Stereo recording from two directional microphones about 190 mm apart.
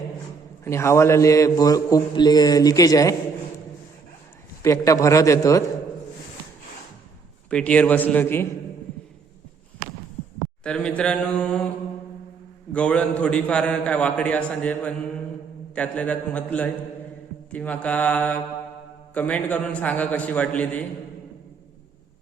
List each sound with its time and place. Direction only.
0.6 s a man's voice: 15° left (ahead or behind)
4.6 s a man's voice: 15° left (ahead or behind)
7.5 s a man's voice: 5° left (ahead or behind)
10.6 s speech: 5° left (ahead or behind)
12.7 s a man's voice: 5° left (ahead or behind)